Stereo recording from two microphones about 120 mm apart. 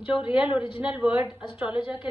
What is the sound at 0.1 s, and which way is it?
A woman's voice, 10° right (ahead or behind).